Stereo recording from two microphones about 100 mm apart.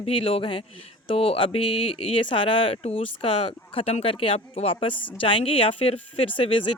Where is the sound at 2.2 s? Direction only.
55° left (ahead or behind).